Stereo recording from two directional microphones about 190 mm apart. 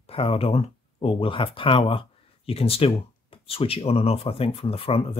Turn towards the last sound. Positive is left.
turn(degrees=30)  # may be behind; listen again after turning